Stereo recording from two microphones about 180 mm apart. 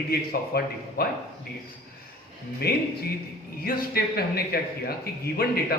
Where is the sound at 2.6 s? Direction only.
60° left (ahead or behind).